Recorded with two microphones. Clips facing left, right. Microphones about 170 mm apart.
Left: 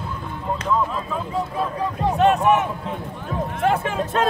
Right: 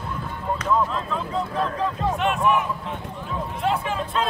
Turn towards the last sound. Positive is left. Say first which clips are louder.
# left 4 dB
turn(degrees=45)  # may be behind; listen again after turning